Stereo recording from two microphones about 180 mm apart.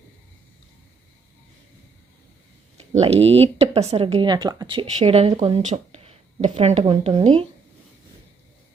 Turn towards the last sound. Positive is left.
turn(degrees=-35)  # may be behind; listen again after turning